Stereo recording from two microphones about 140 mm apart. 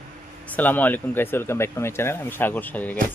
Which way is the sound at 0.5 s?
10° left (ahead or behind).